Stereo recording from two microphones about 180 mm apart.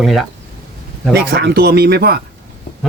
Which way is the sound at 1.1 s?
65° right (ahead or behind).